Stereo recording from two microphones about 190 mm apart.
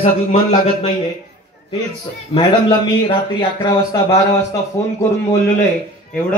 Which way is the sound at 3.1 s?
25° left (ahead or behind).